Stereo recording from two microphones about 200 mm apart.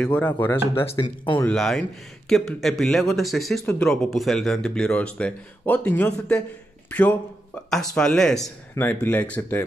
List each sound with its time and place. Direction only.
0.0 s speech: 5° left (ahead or behind)
0.8 s speech: 25° left (ahead or behind)
1.4 s speech: 5° left (ahead or behind)